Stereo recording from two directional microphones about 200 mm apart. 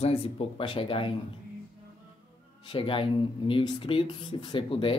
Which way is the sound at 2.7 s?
25° left (ahead or behind).